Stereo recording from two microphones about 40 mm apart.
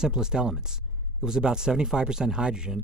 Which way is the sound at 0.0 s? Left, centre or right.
Centre.